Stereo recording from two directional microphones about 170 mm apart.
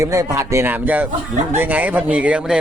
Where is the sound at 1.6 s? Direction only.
10° right (ahead or behind).